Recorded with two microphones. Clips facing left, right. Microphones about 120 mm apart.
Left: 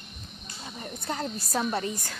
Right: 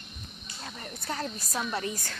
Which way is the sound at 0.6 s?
15° left (ahead or behind).